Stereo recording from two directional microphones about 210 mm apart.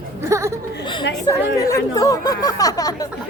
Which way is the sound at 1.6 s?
15° left (ahead or behind).